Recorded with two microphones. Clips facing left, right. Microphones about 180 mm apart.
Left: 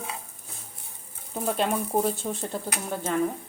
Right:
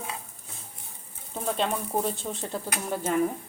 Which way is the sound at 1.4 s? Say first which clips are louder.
Left 2 dB; 5° left (ahead or behind).